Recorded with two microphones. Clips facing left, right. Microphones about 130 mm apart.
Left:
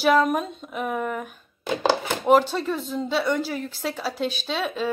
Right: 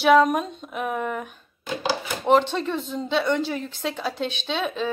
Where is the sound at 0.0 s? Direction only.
Centre (ahead or behind).